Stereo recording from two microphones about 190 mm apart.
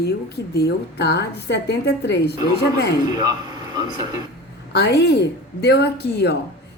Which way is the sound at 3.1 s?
20° right (ahead or behind).